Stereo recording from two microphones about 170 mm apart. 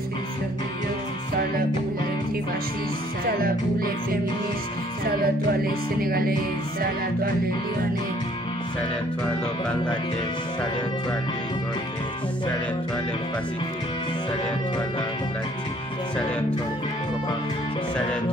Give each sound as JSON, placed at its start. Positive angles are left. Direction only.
{"t": 3.3, "sound": "music", "side_deg": -60}